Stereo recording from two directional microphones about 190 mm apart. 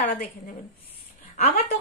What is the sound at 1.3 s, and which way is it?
Speech, 35° left (ahead or behind).